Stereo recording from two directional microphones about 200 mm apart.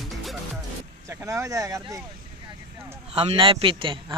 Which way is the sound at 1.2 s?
15° right (ahead or behind).